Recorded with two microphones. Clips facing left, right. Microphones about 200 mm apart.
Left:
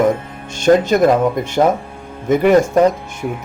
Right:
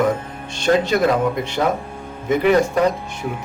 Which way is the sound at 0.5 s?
45° left (ahead or behind).